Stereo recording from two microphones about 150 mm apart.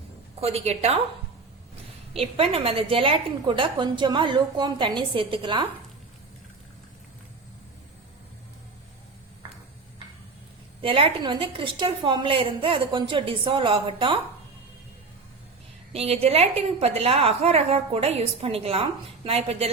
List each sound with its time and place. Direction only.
0.3 s a woman's voice: 45° right (ahead or behind)
2.1 s a woman's voice: 40° right (ahead or behind)
10.8 s a woman's voice: 35° right (ahead or behind)
15.9 s a woman's voice: 40° right (ahead or behind)